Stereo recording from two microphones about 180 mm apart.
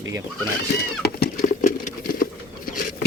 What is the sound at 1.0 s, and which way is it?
Patter, 60° left (ahead or behind).